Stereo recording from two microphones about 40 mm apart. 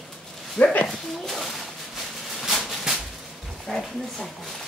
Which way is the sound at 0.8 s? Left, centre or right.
Centre.